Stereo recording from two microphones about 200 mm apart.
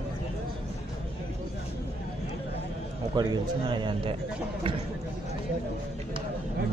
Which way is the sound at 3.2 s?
20° right (ahead or behind).